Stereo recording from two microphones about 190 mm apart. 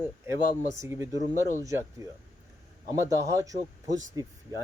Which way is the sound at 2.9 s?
15° right (ahead or behind).